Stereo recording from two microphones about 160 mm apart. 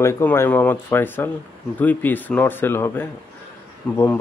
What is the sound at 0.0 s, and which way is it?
Speech, 15° left (ahead or behind).